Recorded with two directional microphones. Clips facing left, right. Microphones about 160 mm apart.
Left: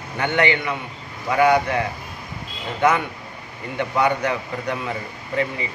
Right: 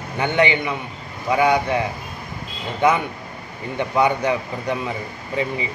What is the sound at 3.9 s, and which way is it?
Speech, 20° right (ahead or behind).